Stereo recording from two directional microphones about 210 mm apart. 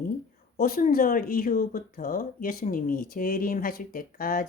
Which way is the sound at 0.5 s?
45° left (ahead or behind).